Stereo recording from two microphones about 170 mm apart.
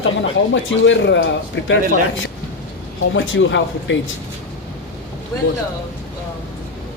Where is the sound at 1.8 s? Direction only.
55° right (ahead or behind).